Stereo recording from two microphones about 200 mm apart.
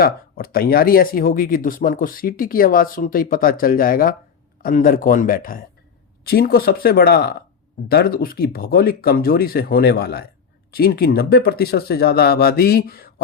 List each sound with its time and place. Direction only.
0.0 s speech: 45° left (ahead or behind)